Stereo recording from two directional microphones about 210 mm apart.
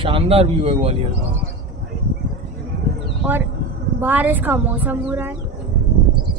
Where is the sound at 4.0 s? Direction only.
10° right (ahead or behind).